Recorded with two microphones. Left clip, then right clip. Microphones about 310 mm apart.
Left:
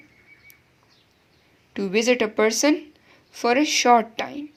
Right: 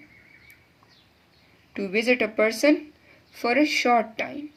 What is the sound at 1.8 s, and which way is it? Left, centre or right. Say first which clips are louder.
Speech: left 2 dB; left.